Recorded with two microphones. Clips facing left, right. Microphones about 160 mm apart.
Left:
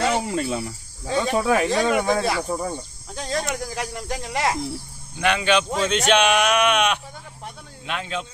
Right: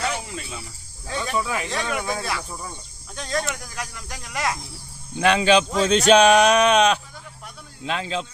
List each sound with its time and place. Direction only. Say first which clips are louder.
0.1 s snake: left 9 dB; 65° left (ahead or behind)
1.0 s speech: left 6 dB; 25° left (ahead or behind)
1.4 s speech: left 6 dB; 45° left (ahead or behind)
1.8 s speech: left 7 dB; 25° left (ahead or behind)
2.5 s speech: left 10 dB; 45° left (ahead or behind)
3.2 s speech: left 1 dB; 25° left (ahead or behind)
5.2 s speech: right 3 dB; 35° right (ahead or behind)